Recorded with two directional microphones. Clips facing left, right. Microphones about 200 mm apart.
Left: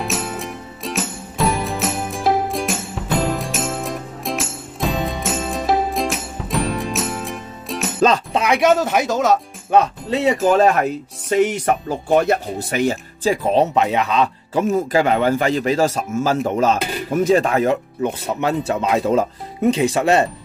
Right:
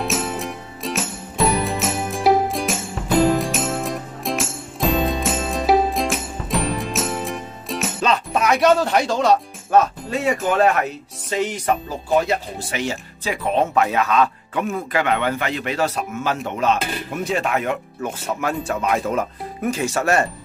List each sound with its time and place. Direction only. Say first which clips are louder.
0.0 s music: right 1 dB; centre (ahead or behind)
8.3 s speech: left 1 dB; 15° left (ahead or behind)
9.7 s speech: left 1 dB; 20° left (ahead or behind)
10.4 s a man's voice: left 3 dB; 30° left (ahead or behind)
11.2 s speech: left 5 dB; 55° left (ahead or behind)
13.2 s a man's voice: left 4 dB; 35° left (ahead or behind)
13.7 s speech: left 1 dB; 20° left (ahead or behind)
14.6 s a man's voice: left 6 dB; 35° left (ahead or behind); by 20.2 s 20° left (ahead or behind)